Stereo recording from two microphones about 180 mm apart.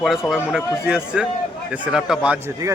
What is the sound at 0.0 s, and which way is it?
Speech, centre (ahead or behind).